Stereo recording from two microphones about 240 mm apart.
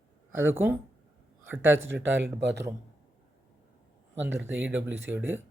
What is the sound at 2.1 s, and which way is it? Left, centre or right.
Speech, right.